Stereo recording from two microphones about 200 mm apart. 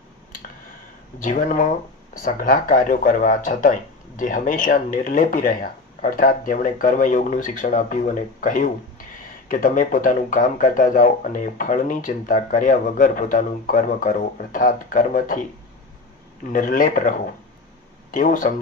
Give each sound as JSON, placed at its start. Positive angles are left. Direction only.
{"t": 1.2, "sound": "speech", "side_deg": 40}
{"t": 16.5, "sound": "speech", "side_deg": 40}